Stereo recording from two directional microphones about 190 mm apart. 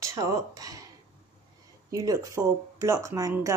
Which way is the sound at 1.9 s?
20° right (ahead or behind).